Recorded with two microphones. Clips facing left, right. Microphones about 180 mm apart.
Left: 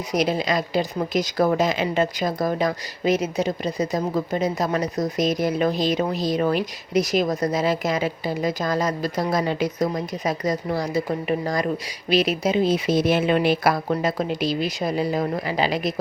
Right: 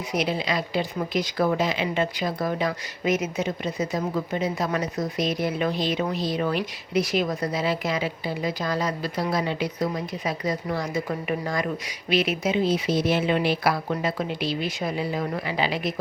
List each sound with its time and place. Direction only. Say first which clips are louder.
0.1 s speech: left 4 dB; 40° left (ahead or behind)
12.6 s speech: left 3 dB; 50° left (ahead or behind)